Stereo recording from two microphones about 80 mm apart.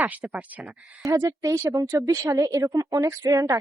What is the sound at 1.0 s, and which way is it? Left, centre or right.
A woman's voice, right.